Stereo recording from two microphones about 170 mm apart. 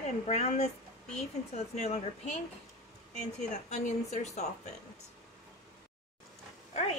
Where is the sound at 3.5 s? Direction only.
45° left (ahead or behind).